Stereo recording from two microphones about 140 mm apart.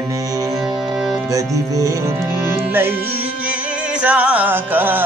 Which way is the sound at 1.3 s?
25° right (ahead or behind).